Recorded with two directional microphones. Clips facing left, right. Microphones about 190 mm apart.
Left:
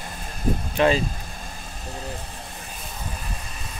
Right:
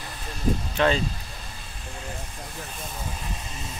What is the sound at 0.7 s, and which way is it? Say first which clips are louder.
Speech: left 3 dB; 10° left (ahead or behind).